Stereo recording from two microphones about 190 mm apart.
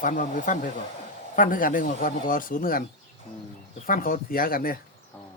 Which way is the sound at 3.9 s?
45° left (ahead or behind).